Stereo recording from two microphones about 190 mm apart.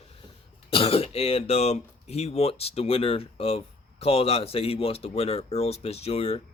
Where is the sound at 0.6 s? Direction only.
30° left (ahead or behind).